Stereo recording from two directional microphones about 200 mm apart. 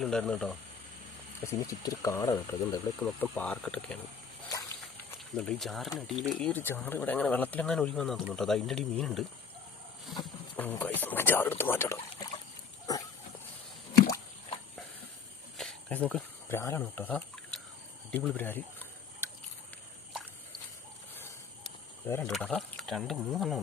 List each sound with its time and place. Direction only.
0.0 s speech: 5° left (ahead or behind)
1.5 s speech: 15° left (ahead or behind)
5.4 s speech: centre (ahead or behind)
10.6 s speech: 10° left (ahead or behind)
12.9 s dog: 15° left (ahead or behind)
15.5 s a sound: 5° left (ahead or behind)
18.1 s speech: 10° left (ahead or behind)
19.2 s a sound: 15° right (ahead or behind)
22.0 s speech: 10° left (ahead or behind)